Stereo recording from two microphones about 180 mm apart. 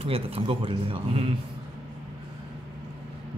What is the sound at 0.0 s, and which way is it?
Speech, 30° right (ahead or behind).